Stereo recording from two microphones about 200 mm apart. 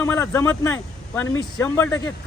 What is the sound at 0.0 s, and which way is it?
Speech, 10° left (ahead or behind).